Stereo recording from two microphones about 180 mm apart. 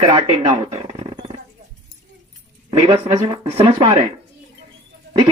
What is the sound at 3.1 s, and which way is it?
Speech, 20° right (ahead or behind).